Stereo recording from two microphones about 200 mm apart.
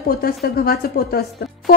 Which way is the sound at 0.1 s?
50° left (ahead or behind).